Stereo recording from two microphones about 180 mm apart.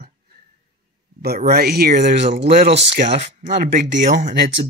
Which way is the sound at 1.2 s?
60° right (ahead or behind).